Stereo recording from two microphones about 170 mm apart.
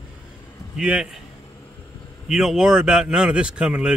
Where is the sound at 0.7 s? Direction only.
5° right (ahead or behind).